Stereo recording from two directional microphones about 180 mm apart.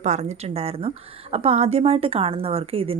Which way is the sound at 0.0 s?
40° right (ahead or behind).